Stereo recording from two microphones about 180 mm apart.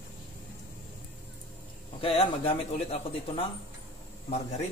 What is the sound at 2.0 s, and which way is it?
A man's voice, 30° left (ahead or behind).